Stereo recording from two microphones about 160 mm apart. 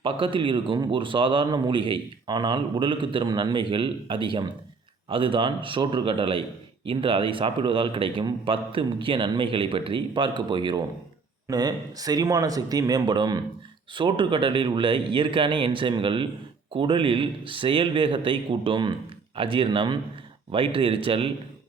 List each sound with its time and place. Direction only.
0.0 s speech: 30° right (ahead or behind)